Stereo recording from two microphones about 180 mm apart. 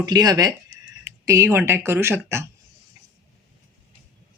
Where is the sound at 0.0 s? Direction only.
20° right (ahead or behind).